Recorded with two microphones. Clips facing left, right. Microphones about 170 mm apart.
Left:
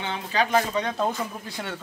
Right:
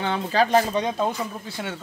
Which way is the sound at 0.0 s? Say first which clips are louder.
Right 4 dB; 40° right (ahead or behind).